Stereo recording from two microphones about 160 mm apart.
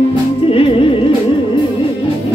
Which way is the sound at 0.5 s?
35° left (ahead or behind).